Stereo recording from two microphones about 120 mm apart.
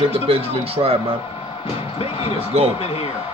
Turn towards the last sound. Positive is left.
turn(degrees=55)  # may be behind; listen again after turning